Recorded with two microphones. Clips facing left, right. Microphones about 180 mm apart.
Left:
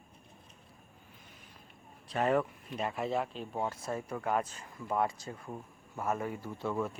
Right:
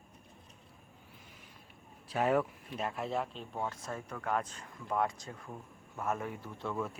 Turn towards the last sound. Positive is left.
turn(degrees=5)  # may be behind; listen again after turning